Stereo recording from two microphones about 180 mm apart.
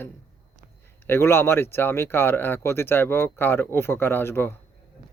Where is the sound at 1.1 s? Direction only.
15° left (ahead or behind).